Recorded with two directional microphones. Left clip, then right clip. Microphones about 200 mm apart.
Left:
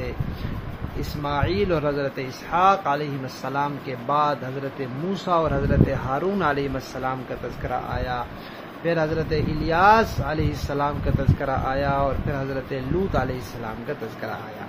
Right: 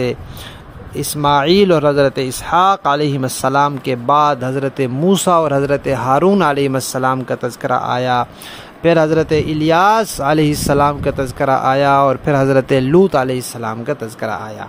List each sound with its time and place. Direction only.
1.2 s speech: 60° right (ahead or behind)